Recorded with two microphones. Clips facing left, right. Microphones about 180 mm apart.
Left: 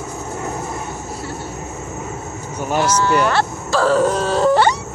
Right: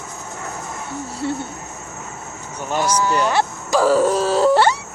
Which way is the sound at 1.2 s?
30° right (ahead or behind).